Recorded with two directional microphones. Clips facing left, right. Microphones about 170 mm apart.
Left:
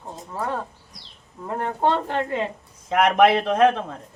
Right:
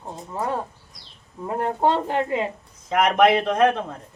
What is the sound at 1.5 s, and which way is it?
Speech, 10° right (ahead or behind).